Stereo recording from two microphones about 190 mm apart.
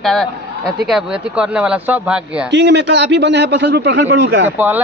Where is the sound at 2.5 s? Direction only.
65° right (ahead or behind).